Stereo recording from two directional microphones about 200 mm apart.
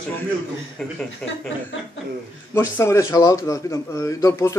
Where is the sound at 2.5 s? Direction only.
10° left (ahead or behind).